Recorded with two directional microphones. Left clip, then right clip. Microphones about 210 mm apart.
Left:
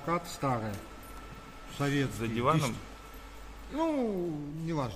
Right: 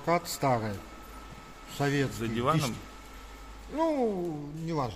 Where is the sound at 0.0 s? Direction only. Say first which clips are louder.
Right 5 dB; 35° right (ahead or behind).